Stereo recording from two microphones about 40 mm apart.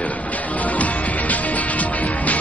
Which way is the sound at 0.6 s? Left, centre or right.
Left.